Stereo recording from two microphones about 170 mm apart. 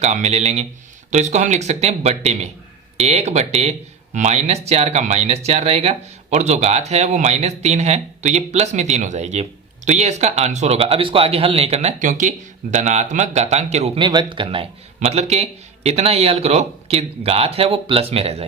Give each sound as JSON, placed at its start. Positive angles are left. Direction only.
{"t": 0.0, "sound": "speech", "side_deg": -40}